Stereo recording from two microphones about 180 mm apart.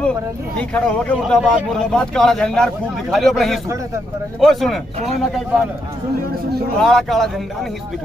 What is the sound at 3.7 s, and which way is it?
Speech, 15° right (ahead or behind).